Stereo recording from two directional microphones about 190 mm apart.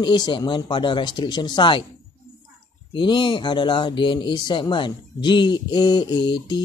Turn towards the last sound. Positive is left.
turn(degrees=25)  # may be behind; listen again after turning